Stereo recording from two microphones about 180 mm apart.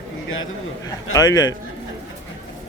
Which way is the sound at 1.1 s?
20° left (ahead or behind).